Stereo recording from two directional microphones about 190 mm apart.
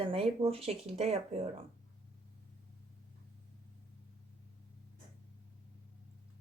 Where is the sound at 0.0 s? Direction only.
30° right (ahead or behind).